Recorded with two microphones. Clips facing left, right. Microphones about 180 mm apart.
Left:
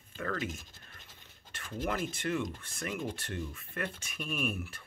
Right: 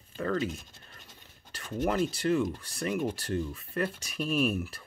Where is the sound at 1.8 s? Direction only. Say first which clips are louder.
Right 7 dB; 35° right (ahead or behind).